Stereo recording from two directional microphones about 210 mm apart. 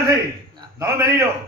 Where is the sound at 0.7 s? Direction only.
15° right (ahead or behind).